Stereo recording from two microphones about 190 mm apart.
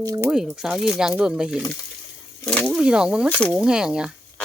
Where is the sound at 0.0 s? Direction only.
20° right (ahead or behind).